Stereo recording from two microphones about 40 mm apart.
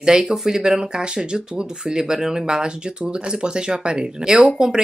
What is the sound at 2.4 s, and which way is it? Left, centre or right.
Speech, right.